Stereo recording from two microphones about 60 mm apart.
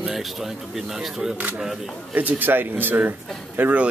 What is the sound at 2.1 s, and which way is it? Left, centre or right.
Speech, right.